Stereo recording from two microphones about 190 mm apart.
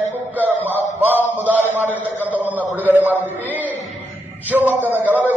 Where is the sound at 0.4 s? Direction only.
10° right (ahead or behind).